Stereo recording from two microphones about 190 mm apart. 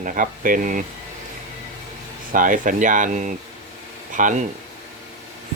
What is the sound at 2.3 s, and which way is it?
Speech, 45° right (ahead or behind).